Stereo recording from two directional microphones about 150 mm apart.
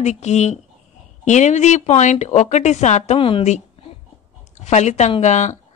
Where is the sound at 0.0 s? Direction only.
50° left (ahead or behind).